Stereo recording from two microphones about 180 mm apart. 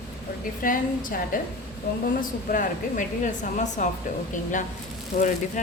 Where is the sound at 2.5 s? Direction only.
45° left (ahead or behind).